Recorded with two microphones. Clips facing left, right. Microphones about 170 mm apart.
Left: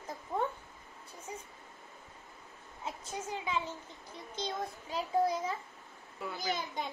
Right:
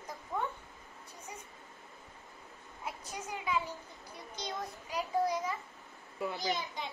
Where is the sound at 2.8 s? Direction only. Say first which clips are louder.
Left 2 dB; 25° left (ahead or behind).